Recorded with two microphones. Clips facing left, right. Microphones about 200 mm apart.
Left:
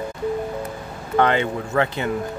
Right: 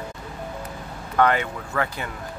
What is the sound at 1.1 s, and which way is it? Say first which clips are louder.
Speech: left 2 dB; 25° left (ahead or behind).